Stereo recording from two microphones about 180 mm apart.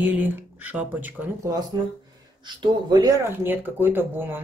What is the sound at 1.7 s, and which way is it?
Speech, 20° right (ahead or behind).